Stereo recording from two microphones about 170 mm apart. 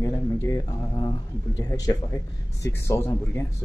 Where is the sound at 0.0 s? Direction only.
20° left (ahead or behind).